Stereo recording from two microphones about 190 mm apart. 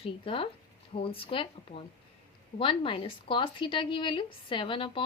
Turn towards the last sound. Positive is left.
turn(degrees=25)  # may be behind; listen again after turning